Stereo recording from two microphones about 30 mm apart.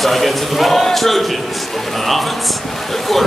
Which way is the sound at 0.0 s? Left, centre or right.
Centre.